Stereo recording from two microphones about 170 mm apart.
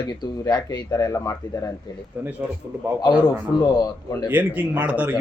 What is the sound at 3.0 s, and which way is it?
Speech, 25° left (ahead or behind).